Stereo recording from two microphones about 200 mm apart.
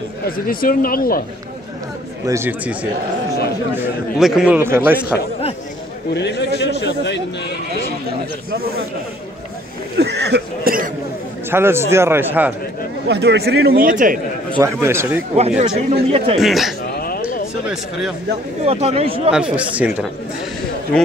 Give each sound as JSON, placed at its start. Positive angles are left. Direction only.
{"t": 0.5, "sound": "speech", "side_deg": 45}
{"t": 2.2, "sound": "a man's voice", "side_deg": -10}
{"t": 6.1, "sound": "a man's voice", "side_deg": 60}
{"t": 8.5, "sound": "a man's voice", "side_deg": -50}
{"t": 9.9, "sound": "speech", "side_deg": -60}
{"t": 11.5, "sound": "a man's voice", "side_deg": -10}
{"t": 13.1, "sound": "a man's voice", "side_deg": -55}
{"t": 14.5, "sound": "a man's voice", "side_deg": -15}
{"t": 15.3, "sound": "speech", "side_deg": -30}
{"t": 16.3, "sound": "speech", "side_deg": 0}
{"t": 16.9, "sound": "a sound", "side_deg": 50}
{"t": 18.7, "sound": "speech", "side_deg": -30}
{"t": 19.3, "sound": "speech", "side_deg": -5}